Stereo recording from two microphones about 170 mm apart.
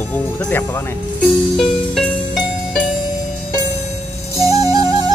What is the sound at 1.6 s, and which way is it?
Music, 5° left (ahead or behind).